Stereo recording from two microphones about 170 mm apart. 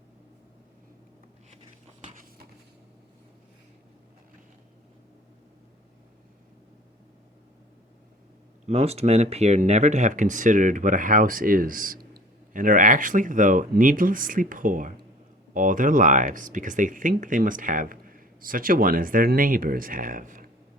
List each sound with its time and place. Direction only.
8.6 s speech: 40° right (ahead or behind)